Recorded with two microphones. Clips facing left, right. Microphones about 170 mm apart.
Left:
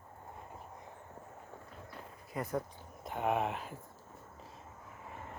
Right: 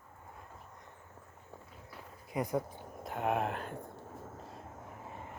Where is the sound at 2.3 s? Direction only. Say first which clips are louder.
Right 3 dB; 15° right (ahead or behind).